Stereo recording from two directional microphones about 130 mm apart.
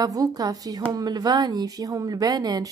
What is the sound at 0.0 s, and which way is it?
Speech, 30° right (ahead or behind).